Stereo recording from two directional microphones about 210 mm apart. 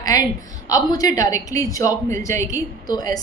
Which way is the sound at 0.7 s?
15° left (ahead or behind).